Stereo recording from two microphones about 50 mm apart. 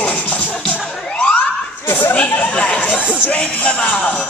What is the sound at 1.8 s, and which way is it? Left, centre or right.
Music, left.